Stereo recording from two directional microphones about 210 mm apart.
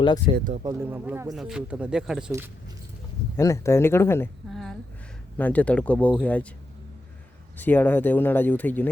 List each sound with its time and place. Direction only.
0.3 s speech: 15° right (ahead or behind)
3.3 s speech: 15° left (ahead or behind)
4.5 s a sound: centre (ahead or behind)
5.4 s speech: 5° left (ahead or behind)
7.5 s speech: 10° left (ahead or behind)